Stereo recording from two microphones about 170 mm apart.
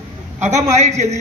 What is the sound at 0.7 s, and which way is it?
Speech, 40° right (ahead or behind).